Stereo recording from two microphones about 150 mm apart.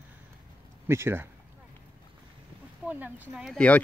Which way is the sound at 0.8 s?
15° right (ahead or behind).